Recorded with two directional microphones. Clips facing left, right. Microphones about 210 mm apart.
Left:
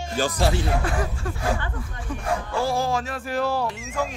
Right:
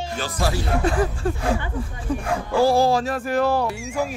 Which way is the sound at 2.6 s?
35° right (ahead or behind).